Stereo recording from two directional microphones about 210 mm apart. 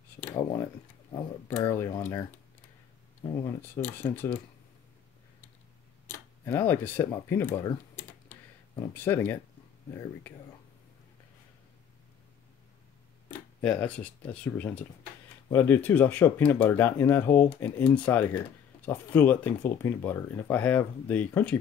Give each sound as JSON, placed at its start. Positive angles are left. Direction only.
{"t": 0.3, "sound": "a sound", "side_deg": 15}
{"t": 1.1, "sound": "speech", "side_deg": 15}
{"t": 3.3, "sound": "speech", "side_deg": 10}
{"t": 6.0, "sound": "speech", "side_deg": 10}
{"t": 8.3, "sound": "a sound", "side_deg": 10}
{"t": 13.6, "sound": "speech", "side_deg": 5}